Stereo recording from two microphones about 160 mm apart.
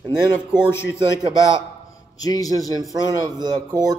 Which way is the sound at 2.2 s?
25° left (ahead or behind).